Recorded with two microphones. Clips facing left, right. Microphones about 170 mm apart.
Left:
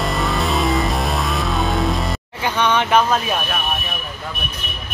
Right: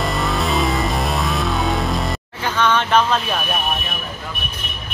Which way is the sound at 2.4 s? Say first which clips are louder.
Even; 15° left (ahead or behind).